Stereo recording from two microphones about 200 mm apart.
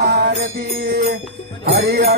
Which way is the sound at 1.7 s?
50° right (ahead or behind).